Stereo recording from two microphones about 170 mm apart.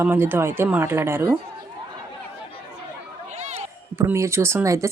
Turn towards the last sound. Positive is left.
turn(degrees=-20)  # may be behind; listen again after turning